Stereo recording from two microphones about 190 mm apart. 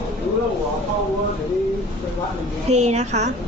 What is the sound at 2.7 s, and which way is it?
Speech, 35° right (ahead or behind).